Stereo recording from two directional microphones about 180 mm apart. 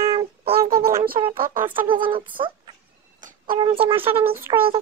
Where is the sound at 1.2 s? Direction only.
25° right (ahead or behind).